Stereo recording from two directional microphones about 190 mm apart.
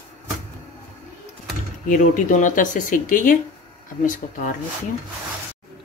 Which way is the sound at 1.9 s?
45° left (ahead or behind).